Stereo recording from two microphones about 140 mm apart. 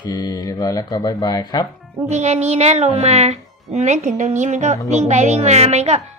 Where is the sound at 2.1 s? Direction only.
55° right (ahead or behind).